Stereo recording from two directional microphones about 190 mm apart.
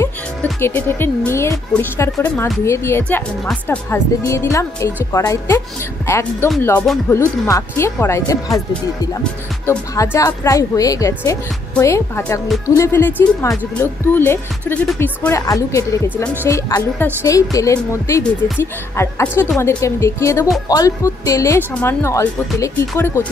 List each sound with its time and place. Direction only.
0.0 s a woman's voice: 15° left (ahead or behind)